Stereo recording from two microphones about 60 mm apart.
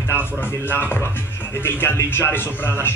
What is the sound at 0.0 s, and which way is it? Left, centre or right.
Speech, left.